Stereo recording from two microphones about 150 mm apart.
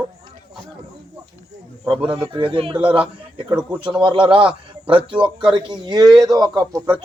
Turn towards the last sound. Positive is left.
turn(degrees=-30)  # may be behind; listen again after turning